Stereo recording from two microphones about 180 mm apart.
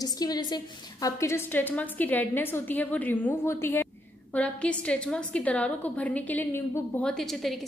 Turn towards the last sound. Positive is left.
turn(degrees=0)  # may be behind; listen again after turning